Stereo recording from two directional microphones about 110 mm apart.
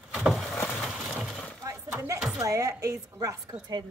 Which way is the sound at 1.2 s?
Centre (ahead or behind).